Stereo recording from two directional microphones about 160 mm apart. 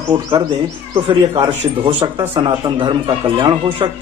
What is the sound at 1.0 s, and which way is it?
A man's voice, 30° right (ahead or behind).